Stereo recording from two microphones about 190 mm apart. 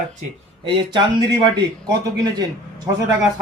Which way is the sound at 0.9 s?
25° right (ahead or behind).